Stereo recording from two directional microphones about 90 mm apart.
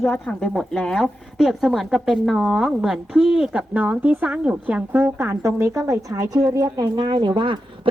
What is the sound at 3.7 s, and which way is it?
A woman's voice, 15° right (ahead or behind).